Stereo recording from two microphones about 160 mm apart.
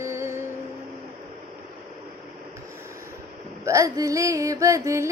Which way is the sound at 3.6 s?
20° right (ahead or behind).